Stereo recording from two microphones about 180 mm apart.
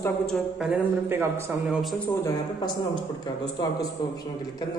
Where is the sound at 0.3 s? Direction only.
5° right (ahead or behind).